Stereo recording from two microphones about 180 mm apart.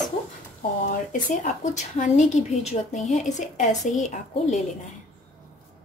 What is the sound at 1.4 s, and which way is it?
A woman's voice, 45° left (ahead or behind).